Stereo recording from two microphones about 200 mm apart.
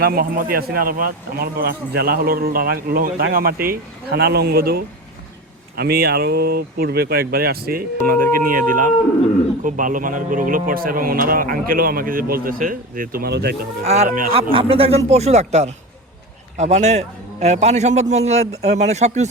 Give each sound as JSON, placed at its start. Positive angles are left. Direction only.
{"t": 0.0, "sound": "speech", "side_deg": -50}
{"t": 13.8, "sound": "a man's voice", "side_deg": -35}
{"t": 14.5, "sound": "a man's voice", "side_deg": -25}